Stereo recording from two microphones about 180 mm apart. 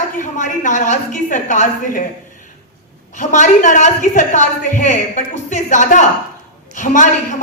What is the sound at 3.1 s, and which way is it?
A woman's voice, 45° left (ahead or behind).